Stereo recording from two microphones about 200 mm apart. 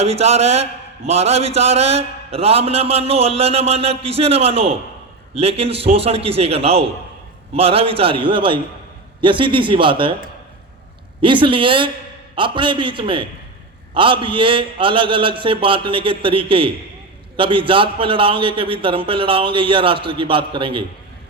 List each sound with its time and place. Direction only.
0.0 s a man's voice: 30° right (ahead or behind)
11.2 s a man's voice: 25° right (ahead or behind)